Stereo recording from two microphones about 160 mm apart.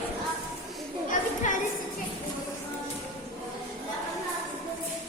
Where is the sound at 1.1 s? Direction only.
55° left (ahead or behind).